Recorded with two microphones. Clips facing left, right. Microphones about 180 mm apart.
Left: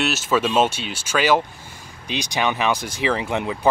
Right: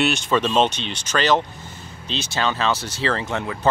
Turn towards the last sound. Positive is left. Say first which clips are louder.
# left 2 dB
turn(degrees=15)  # may be behind; listen again after turning